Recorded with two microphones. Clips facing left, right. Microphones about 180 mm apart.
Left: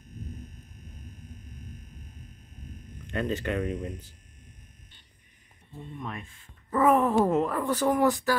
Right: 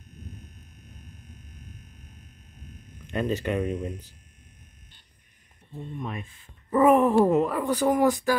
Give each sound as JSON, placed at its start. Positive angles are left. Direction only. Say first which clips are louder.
{"t": 3.1, "sound": "speech", "louder": "right 3 dB", "side_deg": -15}
{"t": 5.9, "sound": "speech", "louder": "right 3 dB", "side_deg": -20}